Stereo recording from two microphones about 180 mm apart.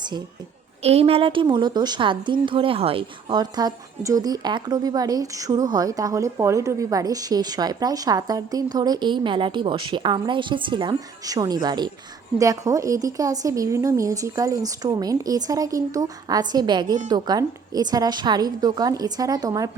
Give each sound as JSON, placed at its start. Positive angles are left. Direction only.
{"t": 0.8, "sound": "a woman's voice", "side_deg": -35}